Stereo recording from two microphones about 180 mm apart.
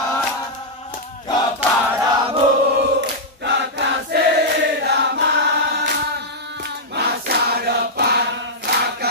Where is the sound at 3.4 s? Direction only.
70° right (ahead or behind).